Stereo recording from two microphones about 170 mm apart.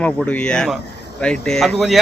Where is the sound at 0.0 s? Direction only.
10° left (ahead or behind).